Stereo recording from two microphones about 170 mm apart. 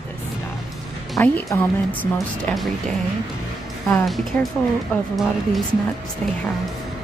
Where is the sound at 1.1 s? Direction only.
15° left (ahead or behind).